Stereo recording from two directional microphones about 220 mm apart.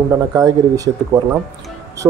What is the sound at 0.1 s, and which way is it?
Speech, 15° right (ahead or behind).